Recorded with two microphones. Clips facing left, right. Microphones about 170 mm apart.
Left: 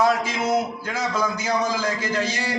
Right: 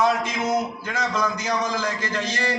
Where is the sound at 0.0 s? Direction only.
5° left (ahead or behind).